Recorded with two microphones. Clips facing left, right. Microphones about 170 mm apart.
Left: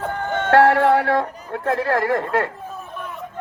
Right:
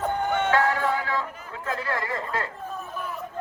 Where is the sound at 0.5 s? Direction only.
70° left (ahead or behind).